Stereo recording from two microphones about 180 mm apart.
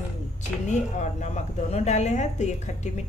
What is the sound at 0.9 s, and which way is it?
Speech, 40° left (ahead or behind).